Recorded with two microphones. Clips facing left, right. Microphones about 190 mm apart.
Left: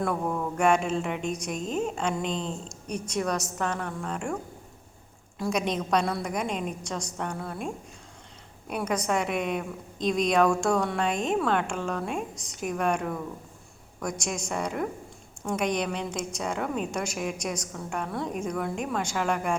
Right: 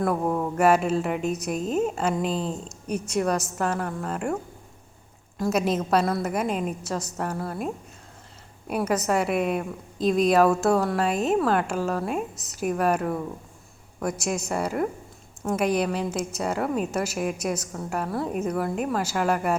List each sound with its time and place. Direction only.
0.1 s speech: 25° right (ahead or behind)
0.5 s a woman's voice: 5° right (ahead or behind)
5.4 s a woman's voice: 5° right (ahead or behind)
8.7 s a woman's voice: 5° right (ahead or behind)